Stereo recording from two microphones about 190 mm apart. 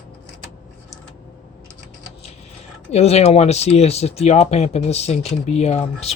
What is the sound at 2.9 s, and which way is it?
Speech, 35° left (ahead or behind).